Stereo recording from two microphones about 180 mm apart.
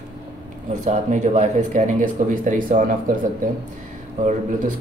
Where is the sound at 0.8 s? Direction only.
40° right (ahead or behind).